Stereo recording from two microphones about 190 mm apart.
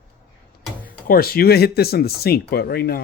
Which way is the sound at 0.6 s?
10° right (ahead or behind).